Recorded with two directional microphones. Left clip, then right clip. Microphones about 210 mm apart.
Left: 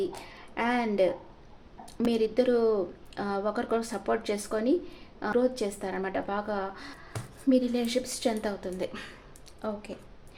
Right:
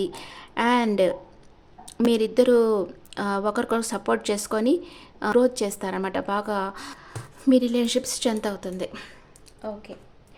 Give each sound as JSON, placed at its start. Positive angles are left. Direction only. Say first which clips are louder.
{"t": 0.0, "sound": "a woman's voice", "louder": "right 3 dB", "side_deg": -35}
{"t": 8.8, "sound": "speech", "louder": "right 2 dB", "side_deg": -15}